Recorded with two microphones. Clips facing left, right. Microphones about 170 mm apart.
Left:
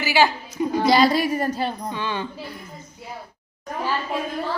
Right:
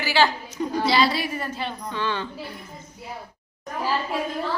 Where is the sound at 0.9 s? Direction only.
45° left (ahead or behind).